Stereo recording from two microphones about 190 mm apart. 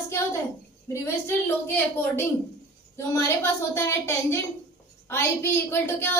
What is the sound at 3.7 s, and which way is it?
A woman's voice, 15° left (ahead or behind).